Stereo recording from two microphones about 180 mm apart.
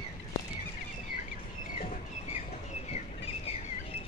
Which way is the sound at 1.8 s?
35° left (ahead or behind).